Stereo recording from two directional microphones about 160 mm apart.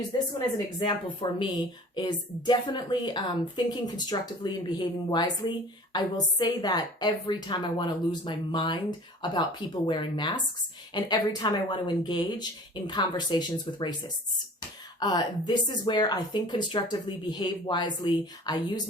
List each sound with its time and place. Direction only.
0.8 s a woman's voice: 30° left (ahead or behind)
14.9 s a woman's voice: 25° left (ahead or behind)